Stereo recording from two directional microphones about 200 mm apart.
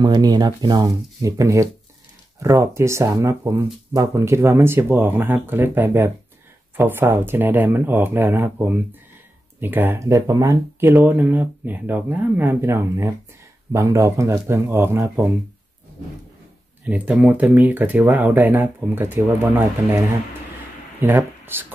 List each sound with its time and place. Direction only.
0.0 s speech: 20° right (ahead or behind)
16.8 s speech: 5° right (ahead or behind)